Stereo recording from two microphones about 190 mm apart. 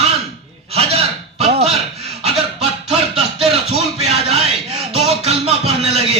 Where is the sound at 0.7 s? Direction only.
30° right (ahead or behind).